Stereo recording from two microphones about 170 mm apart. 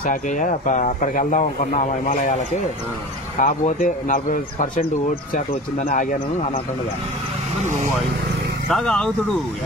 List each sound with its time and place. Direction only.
0.0 s speech: 50° left (ahead or behind)
8.6 s speech: centre (ahead or behind)